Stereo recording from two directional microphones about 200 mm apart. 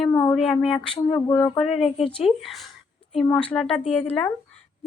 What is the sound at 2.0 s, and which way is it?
Speech, 25° left (ahead or behind).